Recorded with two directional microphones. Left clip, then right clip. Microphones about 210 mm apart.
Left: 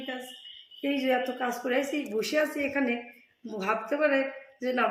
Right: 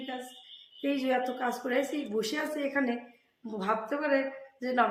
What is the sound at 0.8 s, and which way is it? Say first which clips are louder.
Speech: left 2 dB; 5° left (ahead or behind).